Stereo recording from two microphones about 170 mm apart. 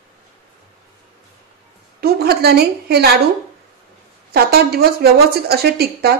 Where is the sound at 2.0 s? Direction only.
70° right (ahead or behind).